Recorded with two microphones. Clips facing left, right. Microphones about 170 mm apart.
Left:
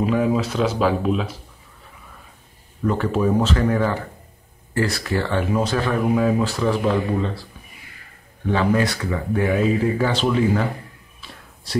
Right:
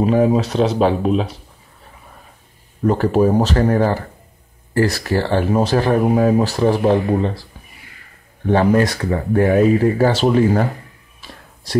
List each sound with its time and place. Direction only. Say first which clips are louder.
0.0 s speech: right 5 dB; 40° right (ahead or behind)
2.8 s speech: right 6 dB; 40° right (ahead or behind)
8.5 s speech: right 5 dB; 45° right (ahead or behind)